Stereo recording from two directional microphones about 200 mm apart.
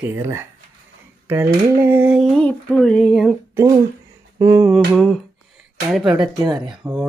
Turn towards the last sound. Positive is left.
turn(degrees=-20)  # may be behind; listen again after turning